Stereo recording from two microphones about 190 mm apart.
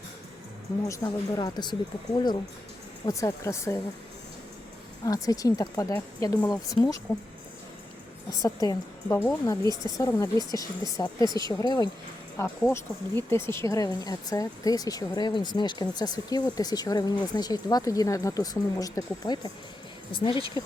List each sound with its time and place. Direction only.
0.9 s speech: 15° left (ahead or behind)
5.0 s speech: 20° left (ahead or behind)
8.4 s speech: 20° left (ahead or behind)